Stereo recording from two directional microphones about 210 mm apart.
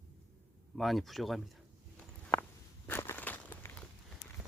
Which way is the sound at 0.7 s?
Centre (ahead or behind).